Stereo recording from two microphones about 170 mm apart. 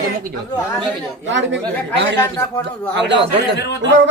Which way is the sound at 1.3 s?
90° right.